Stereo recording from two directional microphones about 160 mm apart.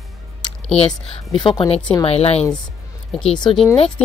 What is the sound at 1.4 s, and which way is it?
Speech, 30° left (ahead or behind).